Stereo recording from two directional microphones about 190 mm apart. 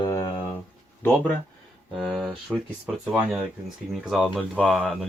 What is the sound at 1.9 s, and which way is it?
Speech, centre (ahead or behind).